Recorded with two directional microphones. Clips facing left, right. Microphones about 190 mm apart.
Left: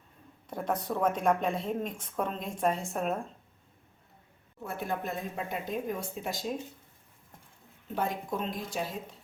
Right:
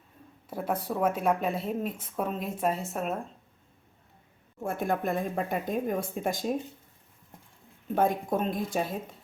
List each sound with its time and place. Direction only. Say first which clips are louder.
0.5 s speech: right 1 dB; 5° right (ahead or behind)
4.6 s speech: right 5 dB; 50° right (ahead or behind)
7.9 s speech: right 6 dB; 50° right (ahead or behind)